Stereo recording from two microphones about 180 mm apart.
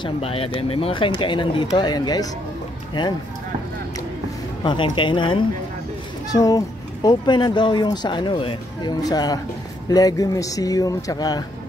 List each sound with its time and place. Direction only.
0.0 s speech: 30° left (ahead or behind)
4.6 s speech: 25° left (ahead or behind)